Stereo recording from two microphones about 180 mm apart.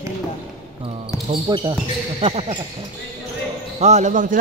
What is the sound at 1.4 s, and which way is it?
Speech, 25° right (ahead or behind).